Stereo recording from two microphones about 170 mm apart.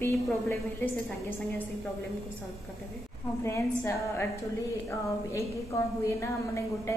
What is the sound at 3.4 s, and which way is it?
Speech, 15° left (ahead or behind).